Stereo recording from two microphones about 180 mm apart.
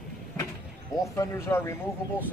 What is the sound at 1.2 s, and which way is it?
Speech, 15° left (ahead or behind).